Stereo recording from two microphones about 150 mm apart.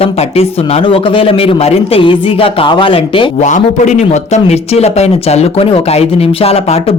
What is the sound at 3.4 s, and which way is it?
A man's voice, 55° left (ahead or behind).